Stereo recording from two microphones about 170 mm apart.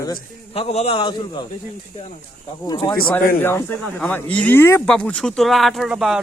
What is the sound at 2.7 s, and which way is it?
Speech, 25° left (ahead or behind).